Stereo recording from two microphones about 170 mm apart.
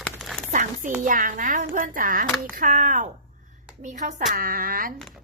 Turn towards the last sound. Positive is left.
turn(degrees=0)  # may be behind; listen again after turning